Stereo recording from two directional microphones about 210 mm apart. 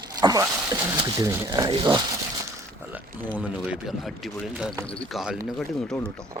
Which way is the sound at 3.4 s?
5° right (ahead or behind).